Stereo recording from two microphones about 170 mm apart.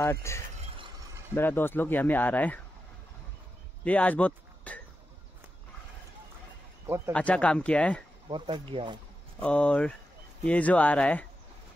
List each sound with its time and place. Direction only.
0.0 s speech: 15° left (ahead or behind)
3.8 s speech: 10° left (ahead or behind)
7.1 s speech: 5° left (ahead or behind)
8.3 s speech: 25° right (ahead or behind)
9.4 s speech: 5° left (ahead or behind)